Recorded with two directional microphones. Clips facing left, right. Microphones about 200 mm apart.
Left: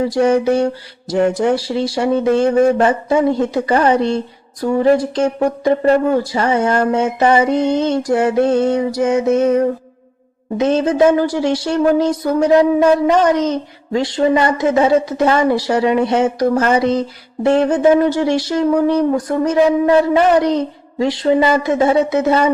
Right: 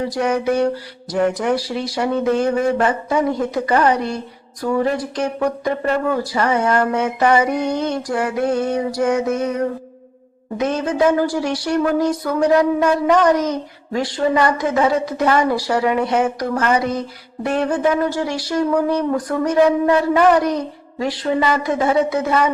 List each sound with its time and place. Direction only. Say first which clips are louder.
0.0 s speech: left 6 dB; 25° left (ahead or behind)
10.6 s speech: left 5 dB; 25° left (ahead or behind)